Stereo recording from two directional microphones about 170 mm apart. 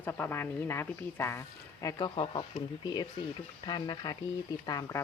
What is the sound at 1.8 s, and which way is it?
Speech, 25° left (ahead or behind).